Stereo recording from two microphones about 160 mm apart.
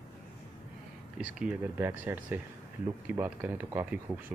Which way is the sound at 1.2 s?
10° right (ahead or behind).